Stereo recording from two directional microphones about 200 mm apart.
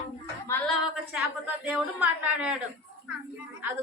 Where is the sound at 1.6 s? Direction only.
5° right (ahead or behind).